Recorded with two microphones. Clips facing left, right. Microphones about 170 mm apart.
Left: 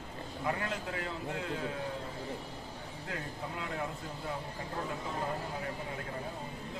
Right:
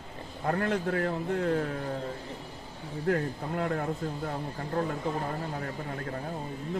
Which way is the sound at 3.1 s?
60° right (ahead or behind).